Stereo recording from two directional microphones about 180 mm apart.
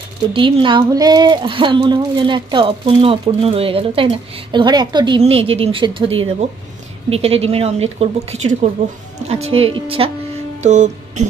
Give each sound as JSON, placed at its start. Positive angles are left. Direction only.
{"t": 0.3, "sound": "a woman's voice", "side_deg": -30}
{"t": 10.6, "sound": "music", "side_deg": -40}